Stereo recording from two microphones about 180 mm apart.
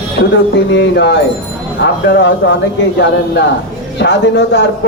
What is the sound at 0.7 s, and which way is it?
Speech, 75° left (ahead or behind).